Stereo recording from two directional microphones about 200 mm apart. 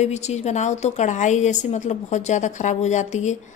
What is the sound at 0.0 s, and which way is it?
A woman's voice, 35° left (ahead or behind).